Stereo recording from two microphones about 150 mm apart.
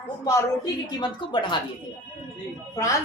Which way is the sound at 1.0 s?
30° left (ahead or behind).